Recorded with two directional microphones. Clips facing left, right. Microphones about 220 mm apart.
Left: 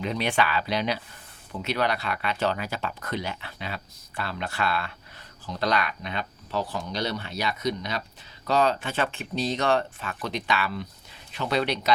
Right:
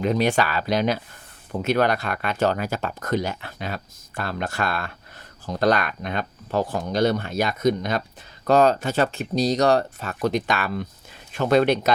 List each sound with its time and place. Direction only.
0.0 s speech: 45° right (ahead or behind)